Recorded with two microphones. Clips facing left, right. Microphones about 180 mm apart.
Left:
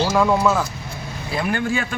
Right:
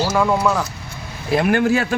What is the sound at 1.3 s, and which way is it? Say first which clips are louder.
Speech: right 6 dB; 65° right (ahead or behind).